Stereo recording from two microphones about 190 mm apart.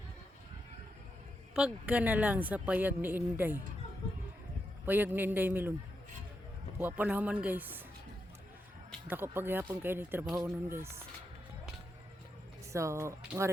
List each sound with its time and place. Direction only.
1.5 s speech: 5° right (ahead or behind)
4.9 s speech: 10° right (ahead or behind)
6.7 s speech: 10° right (ahead or behind)
9.0 s speech: 10° right (ahead or behind)
12.7 s speech: 15° right (ahead or behind)